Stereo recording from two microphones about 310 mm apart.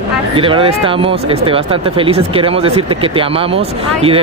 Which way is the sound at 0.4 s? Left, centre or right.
Centre.